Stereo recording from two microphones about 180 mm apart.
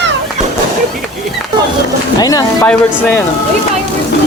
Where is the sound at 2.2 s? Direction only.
20° left (ahead or behind).